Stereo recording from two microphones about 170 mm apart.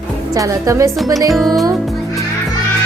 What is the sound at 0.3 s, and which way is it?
Speech, 20° right (ahead or behind).